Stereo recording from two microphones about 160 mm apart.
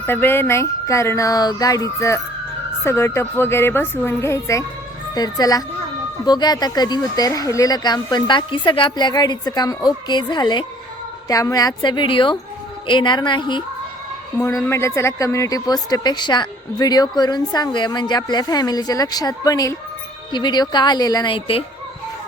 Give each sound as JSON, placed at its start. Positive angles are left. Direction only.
{"t": 0.0, "sound": "a woman's voice", "side_deg": 15}
{"t": 14.3, "sound": "a woman's voice", "side_deg": 15}